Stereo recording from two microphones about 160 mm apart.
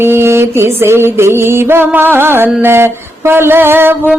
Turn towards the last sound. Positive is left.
turn(degrees=-15)  # may be behind; listen again after turning